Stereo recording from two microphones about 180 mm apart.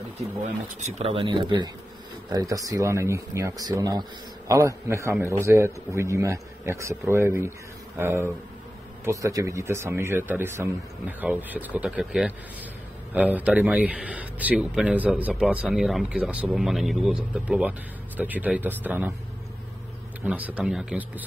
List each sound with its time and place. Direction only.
0.7 s speech: 40° right (ahead or behind); by 19.1 s 10° right (ahead or behind)
20.2 s speech: 10° right (ahead or behind)